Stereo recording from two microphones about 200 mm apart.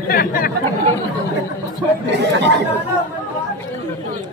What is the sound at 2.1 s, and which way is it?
Chatter, 60° right (ahead or behind).